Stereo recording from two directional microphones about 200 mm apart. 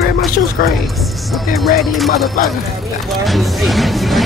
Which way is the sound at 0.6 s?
50° left (ahead or behind).